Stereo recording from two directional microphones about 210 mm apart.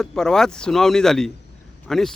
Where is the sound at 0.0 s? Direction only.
Centre (ahead or behind).